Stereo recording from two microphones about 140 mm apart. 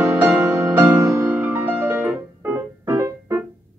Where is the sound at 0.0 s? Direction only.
15° right (ahead or behind).